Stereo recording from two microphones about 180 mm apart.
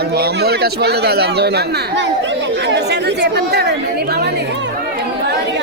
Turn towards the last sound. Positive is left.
turn(degrees=-65)  # may be behind; listen again after turning